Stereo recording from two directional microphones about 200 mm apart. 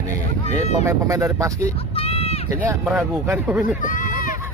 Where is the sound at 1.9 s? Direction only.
30° left (ahead or behind).